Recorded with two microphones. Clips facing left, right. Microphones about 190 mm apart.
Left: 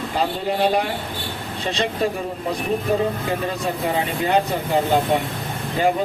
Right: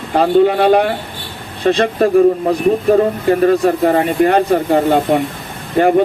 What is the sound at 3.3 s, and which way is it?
Speech, 60° right (ahead or behind).